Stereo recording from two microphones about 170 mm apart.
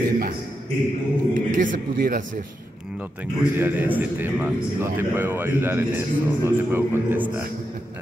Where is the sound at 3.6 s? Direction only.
10° right (ahead or behind).